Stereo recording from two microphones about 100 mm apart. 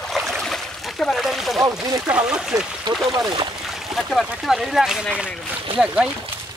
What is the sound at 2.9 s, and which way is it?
Speech, 45° right (ahead or behind).